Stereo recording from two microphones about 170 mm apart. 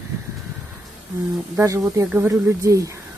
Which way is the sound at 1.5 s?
15° right (ahead or behind).